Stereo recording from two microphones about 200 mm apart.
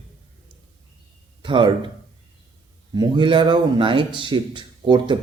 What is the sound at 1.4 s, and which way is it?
Speech, 25° right (ahead or behind).